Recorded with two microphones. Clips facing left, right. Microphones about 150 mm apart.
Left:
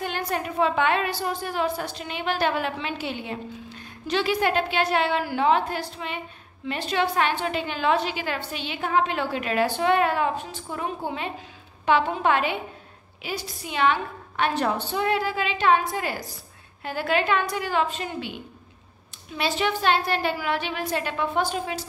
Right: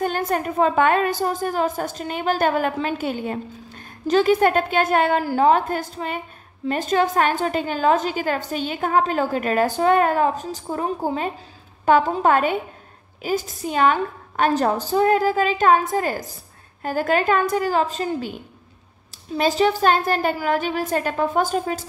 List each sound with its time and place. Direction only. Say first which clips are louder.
0.0 s a woman's voice: right 6 dB; 45° right (ahead or behind)